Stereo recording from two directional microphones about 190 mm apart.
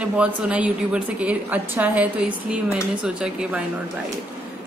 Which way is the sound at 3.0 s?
5° right (ahead or behind).